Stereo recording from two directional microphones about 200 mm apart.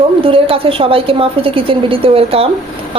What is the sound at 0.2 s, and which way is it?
A woman's voice, 25° right (ahead or behind).